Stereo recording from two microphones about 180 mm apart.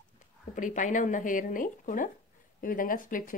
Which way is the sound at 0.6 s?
45° left (ahead or behind).